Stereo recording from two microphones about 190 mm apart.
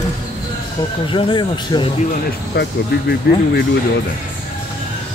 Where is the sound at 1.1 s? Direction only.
25° left (ahead or behind).